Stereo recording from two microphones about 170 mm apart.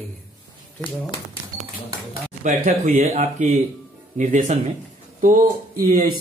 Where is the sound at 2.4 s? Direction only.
45° right (ahead or behind).